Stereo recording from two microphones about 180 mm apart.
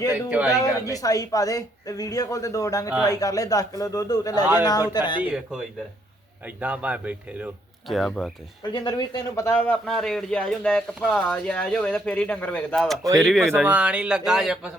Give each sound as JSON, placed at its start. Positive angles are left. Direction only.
{"t": 0.1, "sound": "speech", "side_deg": -10}
{"t": 0.9, "sound": "speech", "side_deg": 20}
{"t": 5.2, "sound": "speech", "side_deg": -5}
{"t": 8.7, "sound": "speech", "side_deg": 25}